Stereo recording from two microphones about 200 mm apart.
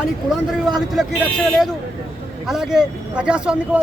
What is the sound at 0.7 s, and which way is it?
Speech, centre (ahead or behind).